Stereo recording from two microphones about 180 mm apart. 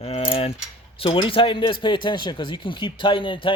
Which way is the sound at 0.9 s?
30° left (ahead or behind).